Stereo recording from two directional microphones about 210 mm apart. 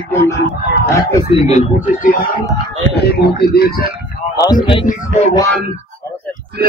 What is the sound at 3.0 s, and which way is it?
Speech, 50° left (ahead or behind).